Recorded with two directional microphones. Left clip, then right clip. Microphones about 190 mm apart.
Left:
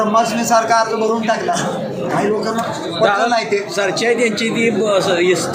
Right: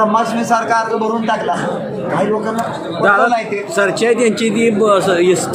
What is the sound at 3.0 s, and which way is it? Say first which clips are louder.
A man's voice: right 2 dB; 40° right (ahead or behind).